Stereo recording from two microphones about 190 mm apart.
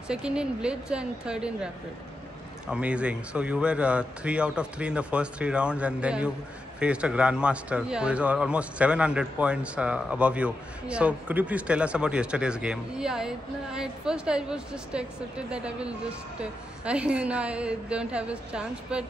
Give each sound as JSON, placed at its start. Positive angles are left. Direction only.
{"t": 0.1, "sound": "a man's voice", "side_deg": -5}